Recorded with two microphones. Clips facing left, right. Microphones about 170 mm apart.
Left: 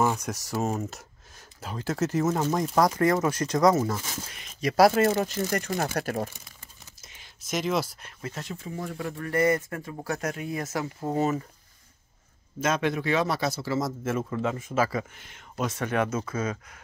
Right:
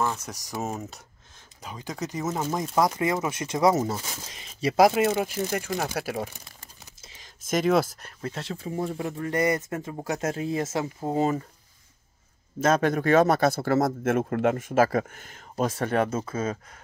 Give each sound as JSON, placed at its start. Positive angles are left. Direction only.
{"t": 0.0, "sound": "typing", "side_deg": 15}
{"t": 0.3, "sound": "speech", "side_deg": -10}
{"t": 3.7, "sound": "speech", "side_deg": -20}
{"t": 4.7, "sound": "speech", "side_deg": -15}
{"t": 7.4, "sound": "speech", "side_deg": -50}
{"t": 12.6, "sound": "a man's voice", "side_deg": -40}